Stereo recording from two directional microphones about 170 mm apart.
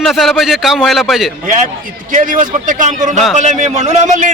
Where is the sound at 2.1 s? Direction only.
50° right (ahead or behind).